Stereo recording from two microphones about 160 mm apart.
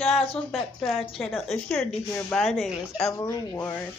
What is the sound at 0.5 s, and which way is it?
Speech, centre (ahead or behind).